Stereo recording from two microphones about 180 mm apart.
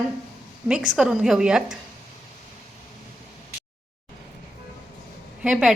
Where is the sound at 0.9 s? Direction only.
5° right (ahead or behind).